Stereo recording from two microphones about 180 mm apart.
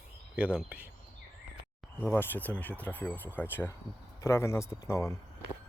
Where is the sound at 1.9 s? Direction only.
10° left (ahead or behind).